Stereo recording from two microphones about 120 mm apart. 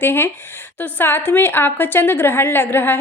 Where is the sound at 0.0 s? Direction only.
20° left (ahead or behind).